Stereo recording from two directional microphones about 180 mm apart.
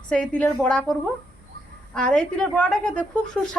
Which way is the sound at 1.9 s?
5° left (ahead or behind).